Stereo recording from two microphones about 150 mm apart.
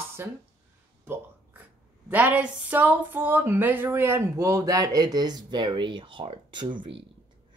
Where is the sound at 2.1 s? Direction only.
10° right (ahead or behind).